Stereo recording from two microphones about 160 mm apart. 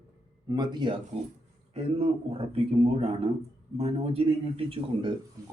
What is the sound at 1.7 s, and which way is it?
Speech, 40° right (ahead or behind).